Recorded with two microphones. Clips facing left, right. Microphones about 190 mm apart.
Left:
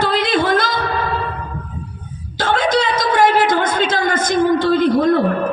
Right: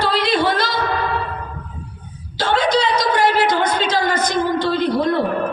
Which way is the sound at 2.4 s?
50° left (ahead or behind).